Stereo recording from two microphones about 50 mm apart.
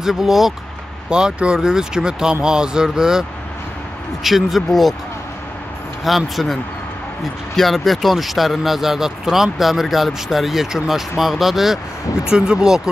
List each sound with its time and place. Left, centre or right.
0.0 s speech: centre
1.1 s speech: centre
6.0 s speech: centre